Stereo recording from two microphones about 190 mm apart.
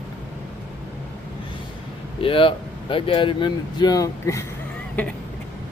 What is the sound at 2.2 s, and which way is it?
Speech, 30° left (ahead or behind).